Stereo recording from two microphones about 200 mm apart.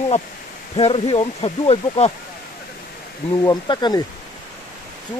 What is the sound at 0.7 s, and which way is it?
Speech, 30° left (ahead or behind).